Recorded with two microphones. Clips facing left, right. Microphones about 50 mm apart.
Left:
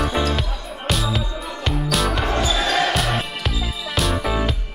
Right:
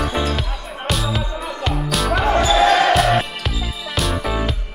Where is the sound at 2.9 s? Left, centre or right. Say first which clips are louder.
Right 6 dB; centre.